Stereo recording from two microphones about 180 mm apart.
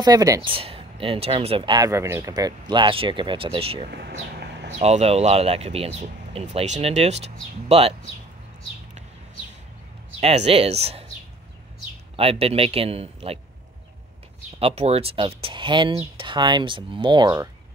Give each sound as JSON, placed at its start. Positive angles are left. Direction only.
{"t": 0.0, "sound": "speech", "side_deg": -20}
{"t": 3.9, "sound": "a sound", "side_deg": -65}
{"t": 4.7, "sound": "speech", "side_deg": -35}
{"t": 10.2, "sound": "speech", "side_deg": -35}
{"t": 12.2, "sound": "speech", "side_deg": -35}
{"t": 14.6, "sound": "speech", "side_deg": -35}